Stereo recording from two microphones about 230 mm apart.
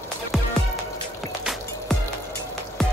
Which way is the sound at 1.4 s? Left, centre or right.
Centre.